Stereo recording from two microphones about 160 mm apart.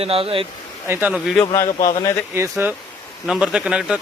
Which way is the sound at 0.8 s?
15° right (ahead or behind).